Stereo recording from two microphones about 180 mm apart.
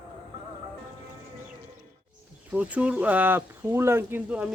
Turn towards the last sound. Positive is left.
turn(degrees=-10)  # may be behind; listen again after turning